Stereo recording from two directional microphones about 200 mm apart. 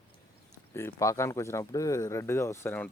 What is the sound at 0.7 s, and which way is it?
Speech, 15° left (ahead or behind).